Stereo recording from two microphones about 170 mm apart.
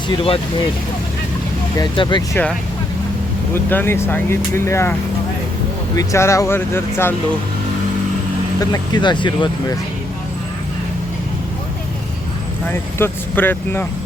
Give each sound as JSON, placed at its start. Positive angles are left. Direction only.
{"t": 1.8, "sound": "speech", "side_deg": 25}
{"t": 2.3, "sound": "speech", "side_deg": 5}
{"t": 6.0, "sound": "speech", "side_deg": 15}
{"t": 8.5, "sound": "speech", "side_deg": 25}
{"t": 12.6, "sound": "speech", "side_deg": 10}